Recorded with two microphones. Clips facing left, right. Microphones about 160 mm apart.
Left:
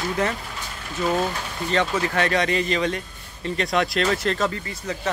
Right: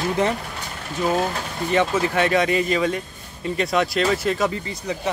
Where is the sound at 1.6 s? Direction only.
15° right (ahead or behind).